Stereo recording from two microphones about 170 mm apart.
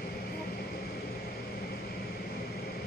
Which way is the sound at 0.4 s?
65° left (ahead or behind).